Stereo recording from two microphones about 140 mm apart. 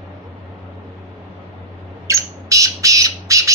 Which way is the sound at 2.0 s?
20° right (ahead or behind).